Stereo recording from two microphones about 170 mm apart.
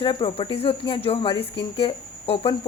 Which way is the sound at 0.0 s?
30° left (ahead or behind).